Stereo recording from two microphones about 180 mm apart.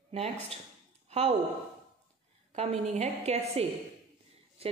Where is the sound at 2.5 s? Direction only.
35° right (ahead or behind).